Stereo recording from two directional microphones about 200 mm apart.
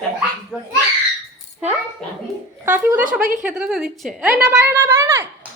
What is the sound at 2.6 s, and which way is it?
A woman's voice, 10° right (ahead or behind).